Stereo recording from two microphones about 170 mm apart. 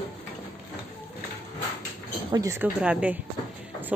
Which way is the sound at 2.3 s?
15° right (ahead or behind).